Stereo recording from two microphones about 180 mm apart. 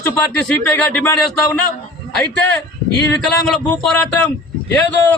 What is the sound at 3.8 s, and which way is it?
Speech, 5° left (ahead or behind).